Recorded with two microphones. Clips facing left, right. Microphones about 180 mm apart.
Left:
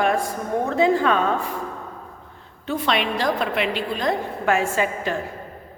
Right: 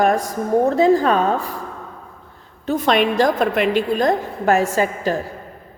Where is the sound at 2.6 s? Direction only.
45° right (ahead or behind).